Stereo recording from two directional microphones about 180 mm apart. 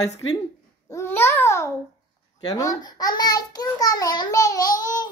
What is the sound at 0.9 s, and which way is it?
A child's voice, 15° left (ahead or behind).